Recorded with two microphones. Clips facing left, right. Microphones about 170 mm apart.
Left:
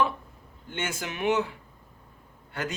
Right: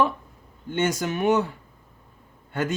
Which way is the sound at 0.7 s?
40° right (ahead or behind).